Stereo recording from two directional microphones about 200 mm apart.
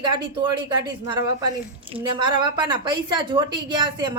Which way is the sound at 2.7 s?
20° right (ahead or behind).